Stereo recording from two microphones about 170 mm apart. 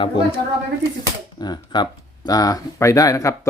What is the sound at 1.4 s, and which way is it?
Speech, 25° left (ahead or behind).